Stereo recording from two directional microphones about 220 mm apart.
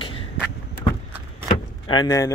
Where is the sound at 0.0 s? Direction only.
25° left (ahead or behind).